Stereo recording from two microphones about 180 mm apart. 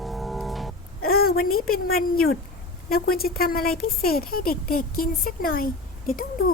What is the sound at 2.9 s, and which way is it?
Speech, 55° left (ahead or behind).